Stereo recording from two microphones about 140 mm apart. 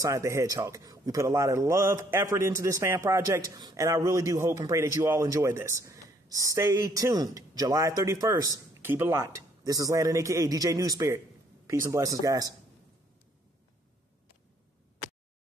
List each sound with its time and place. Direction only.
0.0 s a man's voice: 20° right (ahead or behind)